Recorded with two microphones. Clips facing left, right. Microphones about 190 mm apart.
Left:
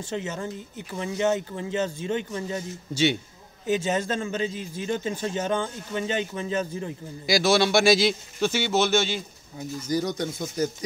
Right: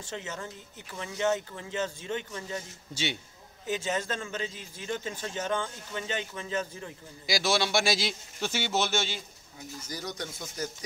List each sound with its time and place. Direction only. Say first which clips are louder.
0.1 s a man's voice: left 7 dB; 20° left (ahead or behind)
3.6 s a man's voice: left 6 dB; 20° left (ahead or behind)
7.2 s a man's voice: left 7 dB; 55° left (ahead or behind)
9.9 s a man's voice: left 11 dB; 20° left (ahead or behind)